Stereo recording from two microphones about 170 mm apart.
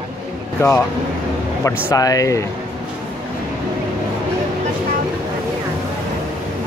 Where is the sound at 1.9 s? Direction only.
20° left (ahead or behind).